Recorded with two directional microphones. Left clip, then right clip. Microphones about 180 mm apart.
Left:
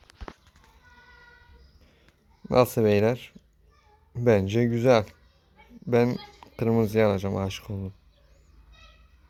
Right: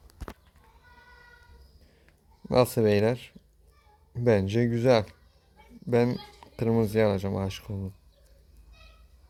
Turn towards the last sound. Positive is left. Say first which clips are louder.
# left 2 dB
turn(degrees=0)  # may be behind; listen again after turning